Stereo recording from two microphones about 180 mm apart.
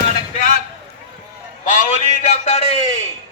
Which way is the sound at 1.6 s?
45° left (ahead or behind).